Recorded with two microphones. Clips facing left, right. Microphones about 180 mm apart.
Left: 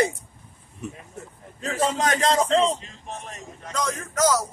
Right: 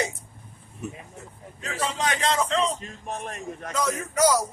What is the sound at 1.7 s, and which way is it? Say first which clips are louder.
Speech: left 4 dB; 45° left (ahead or behind).